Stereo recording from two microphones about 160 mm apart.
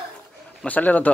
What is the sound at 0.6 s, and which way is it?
Speech, 10° left (ahead or behind).